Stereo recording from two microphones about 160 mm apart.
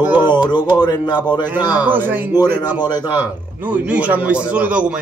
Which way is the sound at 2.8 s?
25° left (ahead or behind).